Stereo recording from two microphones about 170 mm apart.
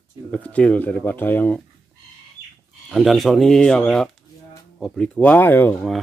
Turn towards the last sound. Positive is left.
turn(degrees=10)  # may be behind; listen again after turning